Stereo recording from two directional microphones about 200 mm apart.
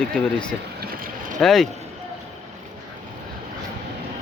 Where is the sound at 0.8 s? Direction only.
45° right (ahead or behind).